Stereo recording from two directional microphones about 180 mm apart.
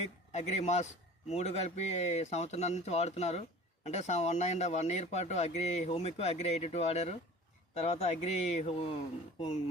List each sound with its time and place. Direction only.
0.3 s speech: 40° left (ahead or behind)